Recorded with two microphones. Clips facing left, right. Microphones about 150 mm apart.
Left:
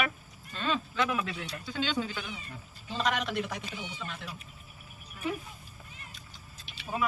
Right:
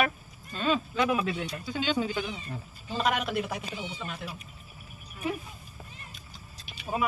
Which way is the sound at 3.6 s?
30° right (ahead or behind).